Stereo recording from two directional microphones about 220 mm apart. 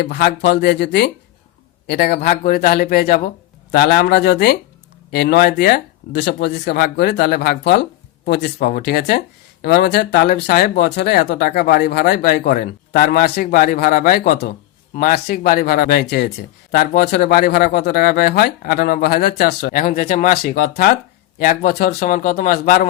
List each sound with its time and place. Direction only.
0.0 s speech: 50° left (ahead or behind)